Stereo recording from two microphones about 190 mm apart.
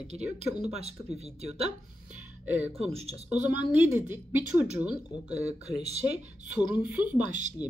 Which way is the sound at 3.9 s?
10° right (ahead or behind).